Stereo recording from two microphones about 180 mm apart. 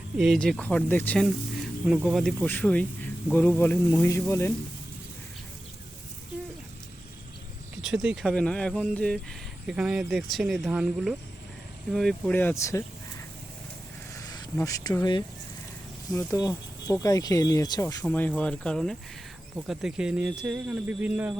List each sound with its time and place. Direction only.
0.2 s speech: centre (ahead or behind)
7.8 s speech: 5° right (ahead or behind); by 13.2 s 15° left (ahead or behind)
14.2 s insect: 20° left (ahead or behind)
14.6 s speech: 20° left (ahead or behind)
18.0 s speech: 5° left (ahead or behind); by 21.3 s 10° right (ahead or behind)